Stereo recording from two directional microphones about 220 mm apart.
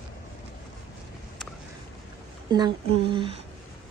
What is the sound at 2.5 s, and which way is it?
Speech, 20° right (ahead or behind).